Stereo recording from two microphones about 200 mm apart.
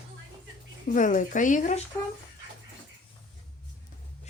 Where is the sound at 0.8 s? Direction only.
40° left (ahead or behind).